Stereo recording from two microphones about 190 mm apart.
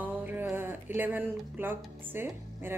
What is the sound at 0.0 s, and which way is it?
A woman's voice, 10° right (ahead or behind).